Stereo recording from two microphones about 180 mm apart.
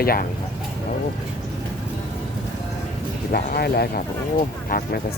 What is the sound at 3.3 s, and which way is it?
Speech, 60° left (ahead or behind).